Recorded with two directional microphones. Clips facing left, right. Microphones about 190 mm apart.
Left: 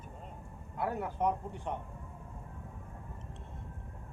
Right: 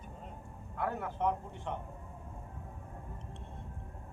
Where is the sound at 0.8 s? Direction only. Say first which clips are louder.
Left 1 dB; 10° left (ahead or behind).